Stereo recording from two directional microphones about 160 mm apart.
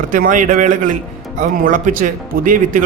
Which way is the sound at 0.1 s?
55° right (ahead or behind).